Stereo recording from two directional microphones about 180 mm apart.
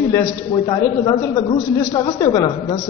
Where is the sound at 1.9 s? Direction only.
25° left (ahead or behind).